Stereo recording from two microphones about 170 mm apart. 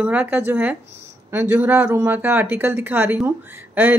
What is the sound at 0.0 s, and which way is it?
A woman's voice, 10° right (ahead or behind).